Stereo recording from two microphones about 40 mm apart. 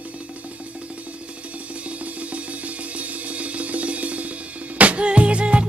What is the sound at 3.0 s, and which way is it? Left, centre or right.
Music, right.